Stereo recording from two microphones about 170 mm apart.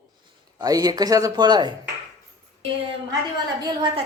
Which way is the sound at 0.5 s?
20° right (ahead or behind).